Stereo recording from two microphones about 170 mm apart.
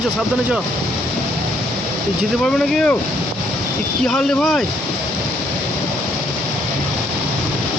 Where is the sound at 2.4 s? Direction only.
5° left (ahead or behind).